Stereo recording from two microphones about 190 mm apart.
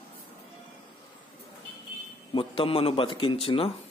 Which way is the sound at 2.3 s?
30° left (ahead or behind).